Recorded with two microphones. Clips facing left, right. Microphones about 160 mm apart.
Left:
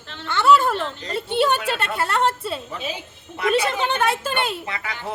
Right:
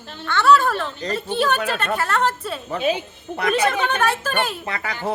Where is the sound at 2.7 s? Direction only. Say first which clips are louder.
Right 9 dB; 60° right (ahead or behind).